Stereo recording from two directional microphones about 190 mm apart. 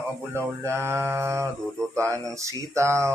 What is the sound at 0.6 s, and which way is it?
Speech, 15° right (ahead or behind).